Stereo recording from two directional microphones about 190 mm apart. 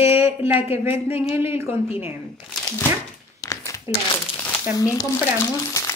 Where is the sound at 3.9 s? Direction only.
15° right (ahead or behind).